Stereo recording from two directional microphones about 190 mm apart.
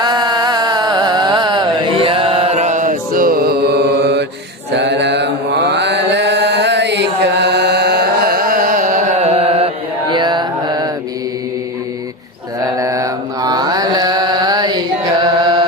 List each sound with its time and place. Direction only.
0.0 s music: 20° right (ahead or behind); by 4.3 s 60° right (ahead or behind)
4.7 s mantra: 65° right (ahead or behind); by 9.6 s 30° right (ahead or behind)
10.1 s carnatic music: 25° right (ahead or behind)
12.6 s mantra: 15° right (ahead or behind)